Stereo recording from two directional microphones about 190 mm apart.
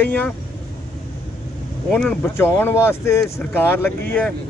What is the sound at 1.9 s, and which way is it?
Speech, 5° left (ahead or behind).